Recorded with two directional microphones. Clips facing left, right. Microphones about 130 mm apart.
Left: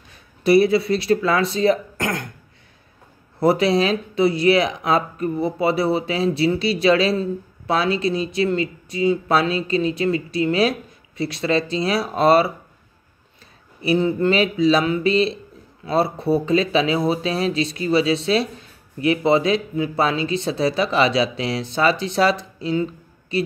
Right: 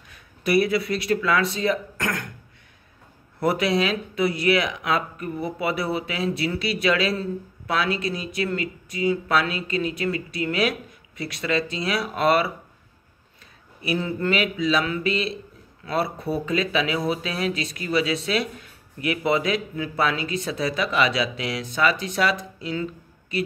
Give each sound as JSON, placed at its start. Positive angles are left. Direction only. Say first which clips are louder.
{"t": 0.1, "sound": "speech", "louder": "left 6 dB", "side_deg": 30}
{"t": 3.3, "sound": "speech", "louder": "left 5 dB", "side_deg": 30}
{"t": 13.7, "sound": "speech", "louder": "left 7 dB", "side_deg": 35}